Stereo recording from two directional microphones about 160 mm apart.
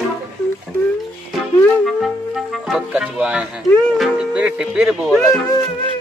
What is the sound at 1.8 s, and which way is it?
Music, centre (ahead or behind).